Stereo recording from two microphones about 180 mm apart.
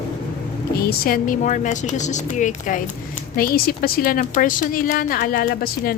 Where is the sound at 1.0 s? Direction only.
50° left (ahead or behind).